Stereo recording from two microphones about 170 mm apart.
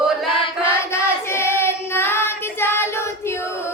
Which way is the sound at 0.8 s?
15° left (ahead or behind).